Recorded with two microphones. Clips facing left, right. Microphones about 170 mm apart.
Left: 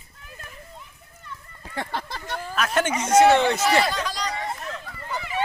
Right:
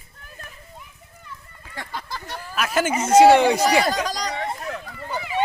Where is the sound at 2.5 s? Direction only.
5° right (ahead or behind).